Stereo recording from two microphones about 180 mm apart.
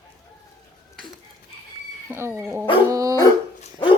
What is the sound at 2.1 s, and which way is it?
Speech, 15° right (ahead or behind).